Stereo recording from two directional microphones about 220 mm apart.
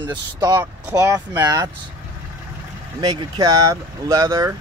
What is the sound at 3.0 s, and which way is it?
Speech, 20° right (ahead or behind).